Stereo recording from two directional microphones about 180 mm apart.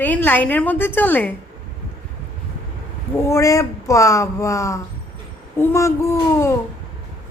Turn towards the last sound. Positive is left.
turn(degrees=15)  # may be behind; listen again after turning